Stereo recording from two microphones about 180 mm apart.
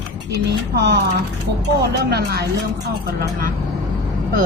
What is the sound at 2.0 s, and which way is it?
Speech, 60° right (ahead or behind).